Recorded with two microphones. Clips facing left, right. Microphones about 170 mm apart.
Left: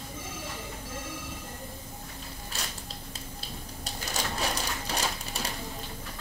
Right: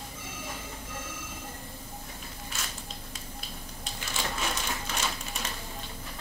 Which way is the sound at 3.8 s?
40° left (ahead or behind).